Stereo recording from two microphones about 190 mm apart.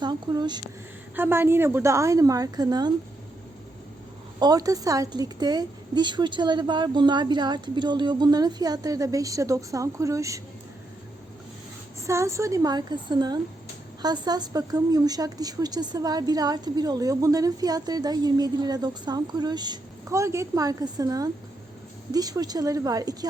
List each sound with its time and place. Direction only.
0.0 s a woman's voice: 20° right (ahead or behind)
1.1 s a woman's voice: 10° right (ahead or behind)
4.4 s a woman's voice: 20° right (ahead or behind)
12.0 s a woman's voice: 15° right (ahead or behind)